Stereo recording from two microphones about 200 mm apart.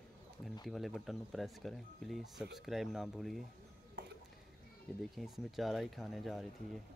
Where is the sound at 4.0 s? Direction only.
55° right (ahead or behind).